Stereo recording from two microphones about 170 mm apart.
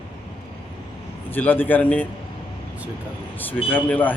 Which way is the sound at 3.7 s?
10° left (ahead or behind).